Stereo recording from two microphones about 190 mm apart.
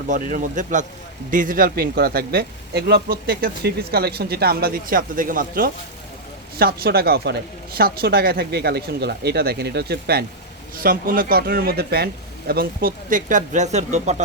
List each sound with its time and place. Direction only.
0.1 s speech: 45° right (ahead or behind)